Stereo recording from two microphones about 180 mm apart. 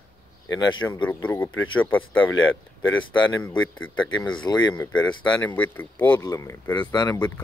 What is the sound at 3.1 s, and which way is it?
Speech, 25° left (ahead or behind).